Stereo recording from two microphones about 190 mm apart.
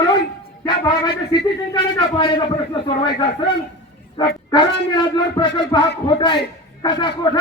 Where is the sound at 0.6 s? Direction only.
20° left (ahead or behind).